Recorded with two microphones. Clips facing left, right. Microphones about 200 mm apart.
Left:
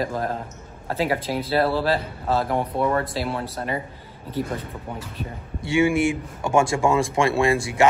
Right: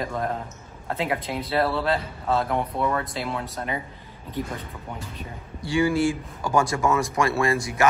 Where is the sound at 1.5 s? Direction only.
30° left (ahead or behind).